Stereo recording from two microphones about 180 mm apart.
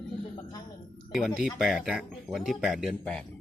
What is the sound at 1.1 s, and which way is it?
Speech, centre (ahead or behind).